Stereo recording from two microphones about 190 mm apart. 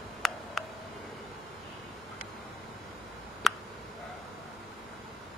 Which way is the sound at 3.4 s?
Centre (ahead or behind).